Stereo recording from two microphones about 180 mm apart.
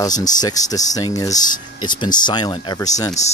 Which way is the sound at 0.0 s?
20° left (ahead or behind).